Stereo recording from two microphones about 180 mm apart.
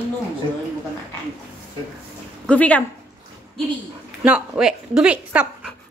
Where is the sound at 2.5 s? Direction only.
10° left (ahead or behind).